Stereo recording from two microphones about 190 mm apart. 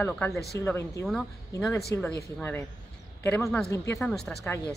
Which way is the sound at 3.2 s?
10° left (ahead or behind).